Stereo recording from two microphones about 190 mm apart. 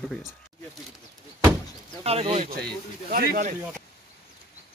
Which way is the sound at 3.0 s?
50° right (ahead or behind).